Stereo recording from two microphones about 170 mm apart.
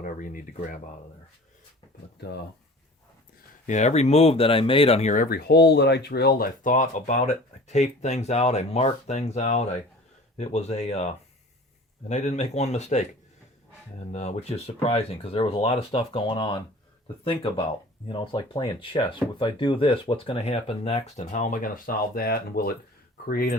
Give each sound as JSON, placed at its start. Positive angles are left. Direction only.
{"t": 0.0, "sound": "speech", "side_deg": 55}
{"t": 3.7, "sound": "speech", "side_deg": 40}
{"t": 14.1, "sound": "speech", "side_deg": 40}
{"t": 18.1, "sound": "speech", "side_deg": 25}